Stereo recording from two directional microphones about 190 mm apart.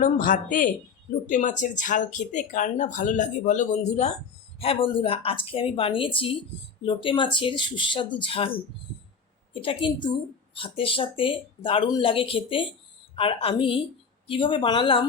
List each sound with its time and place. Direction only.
0.0 s speech: 45° left (ahead or behind); by 15.0 s 25° left (ahead or behind)